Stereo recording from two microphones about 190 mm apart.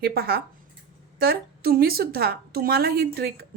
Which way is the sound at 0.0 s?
55° right (ahead or behind).